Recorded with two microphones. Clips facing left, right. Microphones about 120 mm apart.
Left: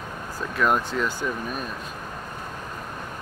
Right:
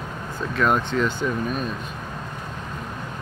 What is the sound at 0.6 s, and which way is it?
Speech, 5° left (ahead or behind).